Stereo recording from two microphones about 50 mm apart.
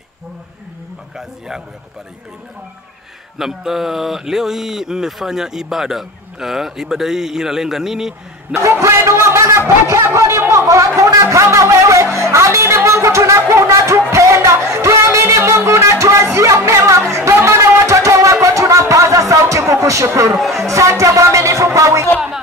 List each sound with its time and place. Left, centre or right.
3.3 s speech: centre
8.5 s a man's voice: right
11.0 s speech: right
11.4 s a sound: right
20.5 s speech: right